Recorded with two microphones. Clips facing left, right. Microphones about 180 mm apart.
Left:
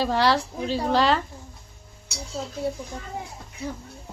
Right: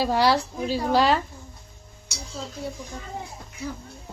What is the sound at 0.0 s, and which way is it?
A woman's voice, 10° right (ahead or behind).